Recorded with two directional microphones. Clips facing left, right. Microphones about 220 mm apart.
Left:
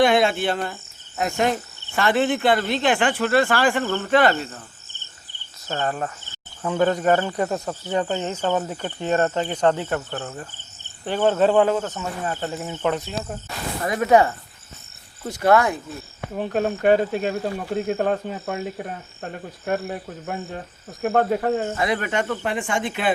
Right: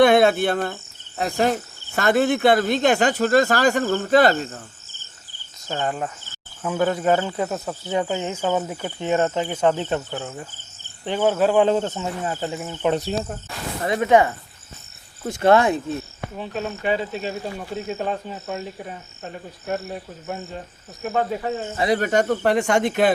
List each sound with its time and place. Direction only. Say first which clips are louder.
0.0 s speech: right 3 dB; 60° right (ahead or behind)
1.2 s speech: right 1 dB; 35° right (ahead or behind)
5.6 s speech: even; 15° right (ahead or behind)
9.7 s speech: right 1 dB; 20° right (ahead or behind)
11.6 s speech: right 2 dB; 25° right (ahead or behind)
12.3 s speech: even; 10° right (ahead or behind)
15.3 s speech: right 2 dB; 25° right (ahead or behind)
16.3 s speech: left 6 dB; 50° left (ahead or behind)
21.8 s speech: right 4 dB; 35° right (ahead or behind)
22.5 s speech: right 6 dB; 70° right (ahead or behind)
22.8 s speech: right 5 dB; 40° right (ahead or behind)